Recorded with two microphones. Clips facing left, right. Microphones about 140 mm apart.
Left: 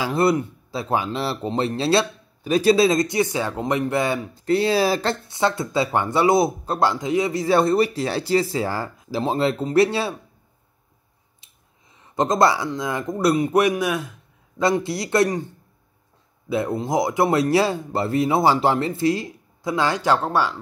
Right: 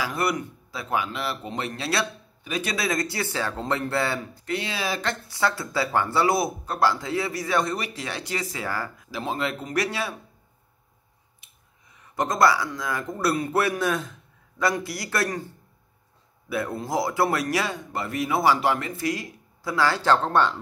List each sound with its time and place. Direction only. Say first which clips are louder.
0.0 s speech: left 7 dB; 25° left (ahead or behind)
4.5 s speech: left 10 dB; 35° left (ahead or behind); by 7.4 s 20° left (ahead or behind)
7.4 s speech: left 11 dB; 30° left (ahead or behind)
11.9 s speech: left 5 dB; 25° left (ahead or behind)
14.6 s speech: left 5 dB; 25° left (ahead or behind)
16.4 s speech: left 5 dB; 25° left (ahead or behind)